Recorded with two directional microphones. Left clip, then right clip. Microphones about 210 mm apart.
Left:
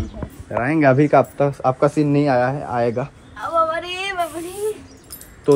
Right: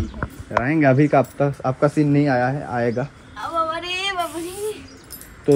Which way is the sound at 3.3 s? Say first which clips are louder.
Left 4 dB; 5° right (ahead or behind).